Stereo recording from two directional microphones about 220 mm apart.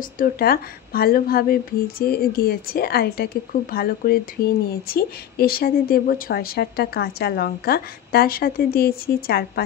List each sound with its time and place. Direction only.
0.2 s a woman's voice: 45° left (ahead or behind)